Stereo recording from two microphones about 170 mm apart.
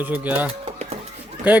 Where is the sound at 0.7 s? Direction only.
40° right (ahead or behind).